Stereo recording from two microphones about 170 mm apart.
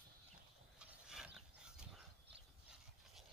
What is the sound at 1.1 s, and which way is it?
Dog, 5° right (ahead or behind).